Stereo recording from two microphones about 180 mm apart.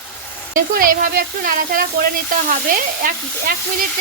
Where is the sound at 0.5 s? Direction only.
50° right (ahead or behind).